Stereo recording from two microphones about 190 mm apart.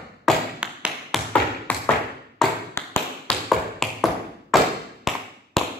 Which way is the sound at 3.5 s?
Centre (ahead or behind).